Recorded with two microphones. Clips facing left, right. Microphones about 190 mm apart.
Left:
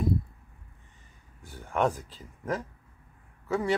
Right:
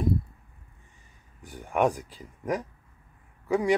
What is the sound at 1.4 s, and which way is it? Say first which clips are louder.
Speech: right 3 dB; 15° right (ahead or behind).